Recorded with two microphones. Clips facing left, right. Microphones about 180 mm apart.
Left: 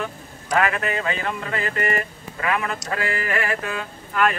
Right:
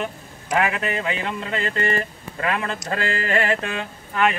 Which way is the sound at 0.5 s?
20° right (ahead or behind).